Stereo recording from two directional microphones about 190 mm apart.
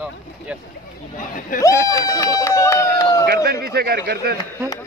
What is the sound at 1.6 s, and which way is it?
Speech, 15° left (ahead or behind).